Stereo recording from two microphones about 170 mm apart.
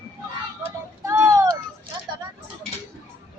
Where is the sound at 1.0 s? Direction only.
20° right (ahead or behind).